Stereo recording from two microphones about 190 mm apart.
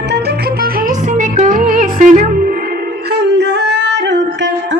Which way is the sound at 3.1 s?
65° right (ahead or behind).